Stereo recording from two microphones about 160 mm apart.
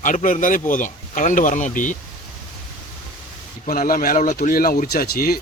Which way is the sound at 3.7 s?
65° left (ahead or behind).